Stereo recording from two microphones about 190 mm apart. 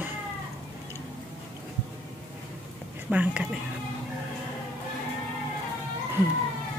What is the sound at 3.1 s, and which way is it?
Speech, 5° right (ahead or behind).